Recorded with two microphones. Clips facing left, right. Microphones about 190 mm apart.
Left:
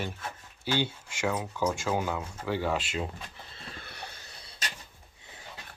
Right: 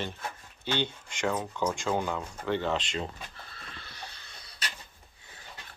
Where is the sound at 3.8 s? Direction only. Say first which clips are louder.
Left 2 dB; 55° left (ahead or behind).